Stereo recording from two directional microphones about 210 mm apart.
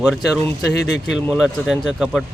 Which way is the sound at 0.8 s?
55° left (ahead or behind).